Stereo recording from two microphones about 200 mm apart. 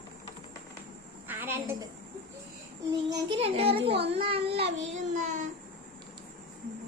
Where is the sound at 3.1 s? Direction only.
30° right (ahead or behind).